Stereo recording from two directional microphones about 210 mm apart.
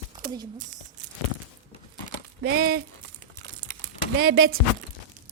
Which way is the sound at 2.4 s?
50° right (ahead or behind).